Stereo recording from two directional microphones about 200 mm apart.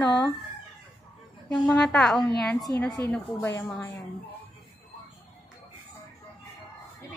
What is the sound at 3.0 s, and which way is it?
Speech, 15° left (ahead or behind).